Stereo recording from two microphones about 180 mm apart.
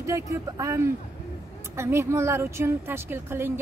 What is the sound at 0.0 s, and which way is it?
Speech, 15° right (ahead or behind).